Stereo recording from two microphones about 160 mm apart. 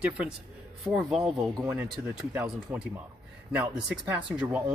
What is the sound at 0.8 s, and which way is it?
Speech, centre (ahead or behind).